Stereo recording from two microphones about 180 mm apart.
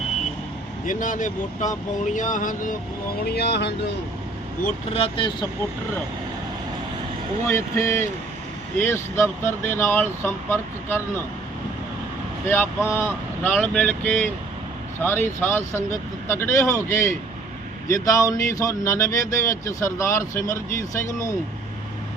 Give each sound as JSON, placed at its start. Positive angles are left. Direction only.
{"t": 0.9, "sound": "speech", "side_deg": 45}
{"t": 3.2, "sound": "speech", "side_deg": 65}
{"t": 4.9, "sound": "speech", "side_deg": 30}
{"t": 7.4, "sound": "speech", "side_deg": 15}
{"t": 12.5, "sound": "speech", "side_deg": 10}